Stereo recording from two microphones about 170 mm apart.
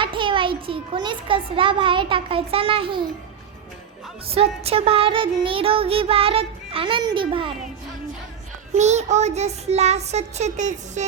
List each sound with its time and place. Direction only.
0.0 s a child's voice: 30° right (ahead or behind)
4.3 s music: 35° right (ahead or behind)
8.7 s music: 40° right (ahead or behind)